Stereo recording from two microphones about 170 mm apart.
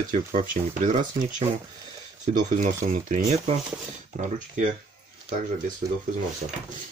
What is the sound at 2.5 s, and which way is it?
Speech, 50° right (ahead or behind).